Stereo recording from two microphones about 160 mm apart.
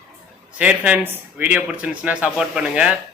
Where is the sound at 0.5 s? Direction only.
5° right (ahead or behind).